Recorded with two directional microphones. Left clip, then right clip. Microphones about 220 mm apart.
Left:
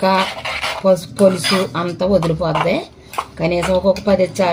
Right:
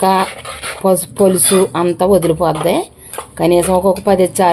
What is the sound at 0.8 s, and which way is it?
Speech, 35° right (ahead or behind).